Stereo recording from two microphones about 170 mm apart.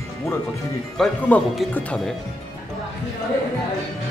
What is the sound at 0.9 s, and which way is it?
Speech, 10° left (ahead or behind).